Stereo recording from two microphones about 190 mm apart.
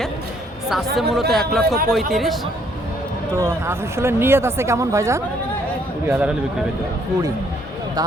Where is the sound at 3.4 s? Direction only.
15° right (ahead or behind).